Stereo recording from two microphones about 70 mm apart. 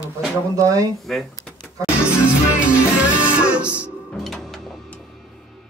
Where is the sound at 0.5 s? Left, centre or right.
Right.